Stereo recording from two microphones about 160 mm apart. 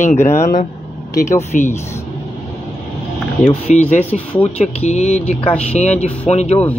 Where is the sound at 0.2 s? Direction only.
15° left (ahead or behind).